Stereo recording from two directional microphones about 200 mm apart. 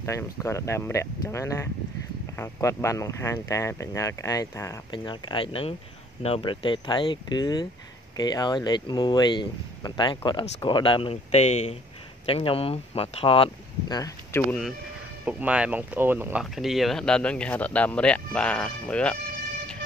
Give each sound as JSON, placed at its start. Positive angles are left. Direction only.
{"t": 0.0, "sound": "speech", "side_deg": 15}
{"t": 15.2, "sound": "speech", "side_deg": -5}